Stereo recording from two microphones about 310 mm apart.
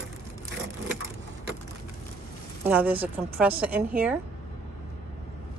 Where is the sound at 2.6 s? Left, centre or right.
Centre.